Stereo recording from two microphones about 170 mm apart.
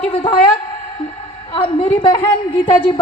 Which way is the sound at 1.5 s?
30° left (ahead or behind).